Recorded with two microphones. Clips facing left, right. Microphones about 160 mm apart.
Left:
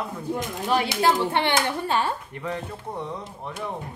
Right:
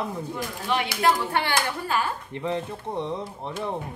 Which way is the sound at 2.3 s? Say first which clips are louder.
Right 3 dB; 25° right (ahead or behind).